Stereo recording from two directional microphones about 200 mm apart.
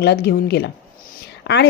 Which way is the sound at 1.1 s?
55° left (ahead or behind).